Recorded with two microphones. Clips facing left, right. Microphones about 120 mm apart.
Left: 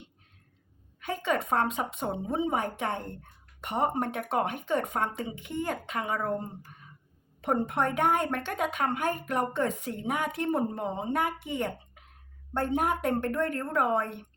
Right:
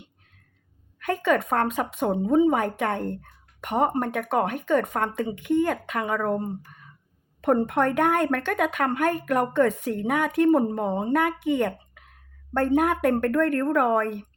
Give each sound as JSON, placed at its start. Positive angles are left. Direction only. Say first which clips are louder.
{"t": 0.9, "sound": "speech", "louder": "right 6 dB", "side_deg": -60}
{"t": 4.1, "sound": "speech", "louder": "right 5 dB", "side_deg": -50}
{"t": 7.4, "sound": "speech", "louder": "right 6 dB", "side_deg": -60}